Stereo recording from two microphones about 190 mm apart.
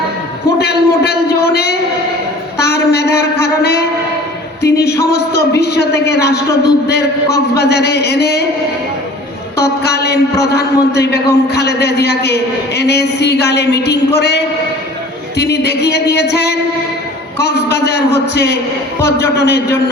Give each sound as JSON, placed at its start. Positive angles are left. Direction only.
{"t": 0.6, "sound": "a sound", "side_deg": 55}
{"t": 4.6, "sound": "a man's voice", "side_deg": 60}
{"t": 9.6, "sound": "a man's voice", "side_deg": 60}